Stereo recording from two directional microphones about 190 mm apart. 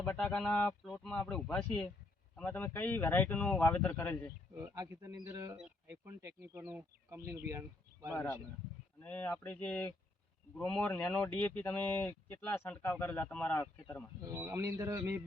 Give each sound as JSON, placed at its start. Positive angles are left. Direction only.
{"t": 0.0, "sound": "speech", "side_deg": 10}
{"t": 4.6, "sound": "speech", "side_deg": -15}
{"t": 8.1, "sound": "speech", "side_deg": 15}
{"t": 14.3, "sound": "speech", "side_deg": -10}